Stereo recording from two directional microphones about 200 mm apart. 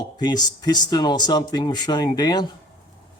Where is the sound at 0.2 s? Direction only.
20° left (ahead or behind).